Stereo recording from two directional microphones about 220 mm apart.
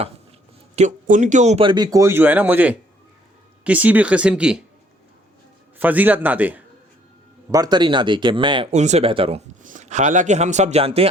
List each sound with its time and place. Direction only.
0.8 s speech: 35° right (ahead or behind); by 4.6 s 5° right (ahead or behind)
5.8 s a man's voice: 5° right (ahead or behind)
7.5 s speech: 20° right (ahead or behind)